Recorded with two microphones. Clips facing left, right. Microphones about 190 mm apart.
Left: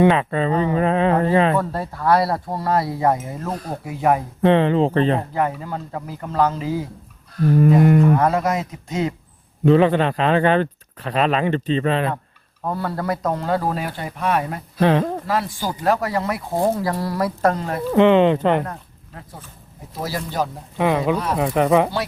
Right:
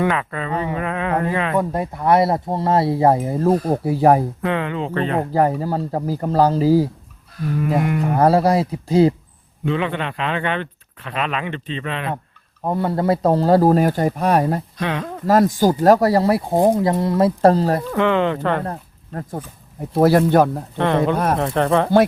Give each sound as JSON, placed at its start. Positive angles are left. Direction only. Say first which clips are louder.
{"t": 0.0, "sound": "speech", "louder": "left 5 dB", "side_deg": 25}
{"t": 1.5, "sound": "speech", "louder": "right 2 dB", "side_deg": -15}
{"t": 4.4, "sound": "speech", "louder": "left 7 dB", "side_deg": 30}
{"t": 5.3, "sound": "speech", "louder": "right 5 dB", "side_deg": -35}
{"t": 7.8, "sound": "speech", "louder": "left 6 dB", "side_deg": 40}
{"t": 8.1, "sound": "speech", "louder": "right 4 dB", "side_deg": -35}
{"t": 9.6, "sound": "speech", "louder": "left 7 dB", "side_deg": 40}
{"t": 12.6, "sound": "speech", "louder": "right 5 dB", "side_deg": -20}
{"t": 14.8, "sound": "speech", "louder": "left 7 dB", "side_deg": 35}
{"t": 15.3, "sound": "speech", "louder": "right 9 dB", "side_deg": -45}
{"t": 16.6, "sound": "speech", "louder": "right 3 dB", "side_deg": -15}
{"t": 17.9, "sound": "speech", "louder": "left 8 dB", "side_deg": 20}
{"t": 19.9, "sound": "speech", "louder": "right 14 dB", "side_deg": -60}
{"t": 20.7, "sound": "speech", "louder": "right 1 dB", "side_deg": 5}